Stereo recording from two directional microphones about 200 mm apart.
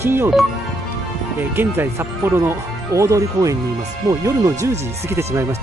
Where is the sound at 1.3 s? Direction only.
10° right (ahead or behind).